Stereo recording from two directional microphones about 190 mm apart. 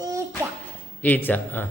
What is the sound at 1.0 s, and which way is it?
Speech, 10° left (ahead or behind).